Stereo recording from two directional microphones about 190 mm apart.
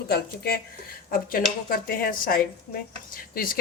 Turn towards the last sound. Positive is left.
turn(degrees=50)  # may be behind; listen again after turning